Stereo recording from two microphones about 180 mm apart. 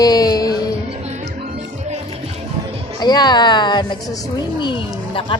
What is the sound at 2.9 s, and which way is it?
A woman's voice, 25° left (ahead or behind).